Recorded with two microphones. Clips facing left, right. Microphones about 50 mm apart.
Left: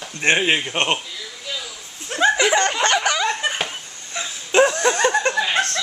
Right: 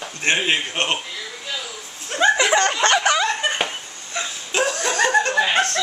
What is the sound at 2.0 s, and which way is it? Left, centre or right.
Laughter, centre.